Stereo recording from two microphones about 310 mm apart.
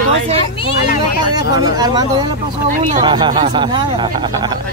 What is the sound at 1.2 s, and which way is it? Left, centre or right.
Speech, centre.